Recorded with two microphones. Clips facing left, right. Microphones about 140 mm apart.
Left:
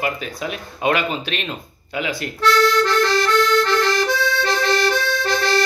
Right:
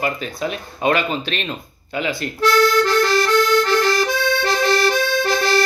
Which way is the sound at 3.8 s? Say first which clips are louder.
Right 1 dB; 5° right (ahead or behind).